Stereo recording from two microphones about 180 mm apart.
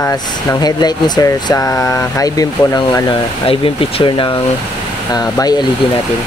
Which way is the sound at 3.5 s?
30° left (ahead or behind).